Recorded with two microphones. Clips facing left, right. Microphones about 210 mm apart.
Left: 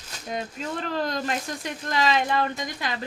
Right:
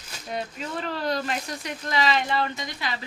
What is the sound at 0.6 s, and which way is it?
Speech, 45° left (ahead or behind).